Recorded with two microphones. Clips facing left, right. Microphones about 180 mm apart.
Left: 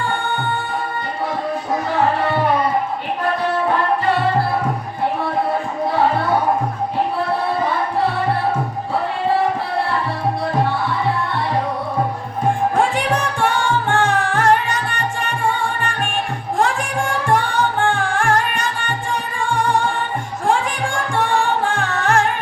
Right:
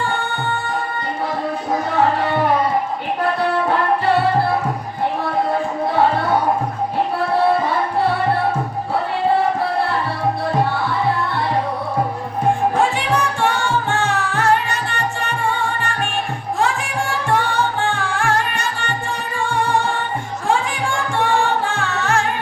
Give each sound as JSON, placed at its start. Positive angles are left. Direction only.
{"t": 13.1, "sound": "music", "side_deg": 50}
{"t": 16.6, "sound": "music", "side_deg": 50}
{"t": 20.5, "sound": "music", "side_deg": 50}